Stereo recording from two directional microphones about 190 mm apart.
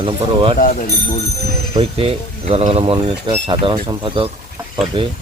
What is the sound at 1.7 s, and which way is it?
Speech, 30° right (ahead or behind).